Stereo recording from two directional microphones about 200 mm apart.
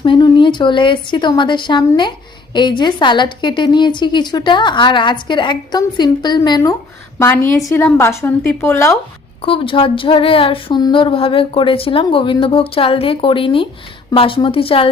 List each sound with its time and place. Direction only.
0.0 s a woman's voice: 25° left (ahead or behind)
9.4 s speech: 25° left (ahead or behind)